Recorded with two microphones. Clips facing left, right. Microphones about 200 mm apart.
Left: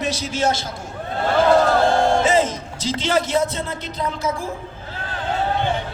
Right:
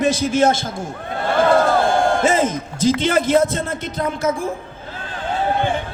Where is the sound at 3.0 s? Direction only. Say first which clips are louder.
Right 1 dB; 55° right (ahead or behind).